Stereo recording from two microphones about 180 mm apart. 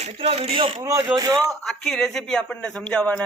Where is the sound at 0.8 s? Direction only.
20° right (ahead or behind).